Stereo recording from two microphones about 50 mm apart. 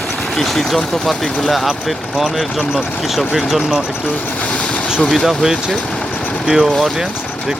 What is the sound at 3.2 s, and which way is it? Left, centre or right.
Speech, centre.